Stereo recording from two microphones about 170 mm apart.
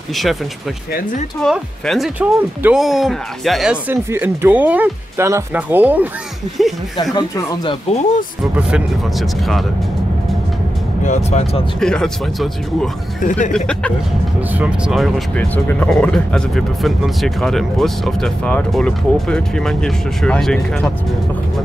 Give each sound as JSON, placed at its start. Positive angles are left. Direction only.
{"t": 0.1, "sound": "speech", "side_deg": 0}
{"t": 1.4, "sound": "speech", "side_deg": 0}
{"t": 3.9, "sound": "speech", "side_deg": -15}
{"t": 7.2, "sound": "speech", "side_deg": 25}
{"t": 8.5, "sound": "speech", "side_deg": -5}
{"t": 11.1, "sound": "speech", "side_deg": 40}
{"t": 11.8, "sound": "speech", "side_deg": 5}
{"t": 13.2, "sound": "speech", "side_deg": 50}
{"t": 14.5, "sound": "speech", "side_deg": -5}